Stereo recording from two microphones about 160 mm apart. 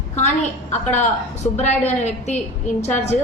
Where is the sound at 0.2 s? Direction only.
45° left (ahead or behind).